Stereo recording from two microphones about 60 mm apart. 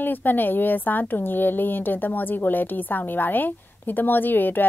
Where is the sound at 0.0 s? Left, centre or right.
Left.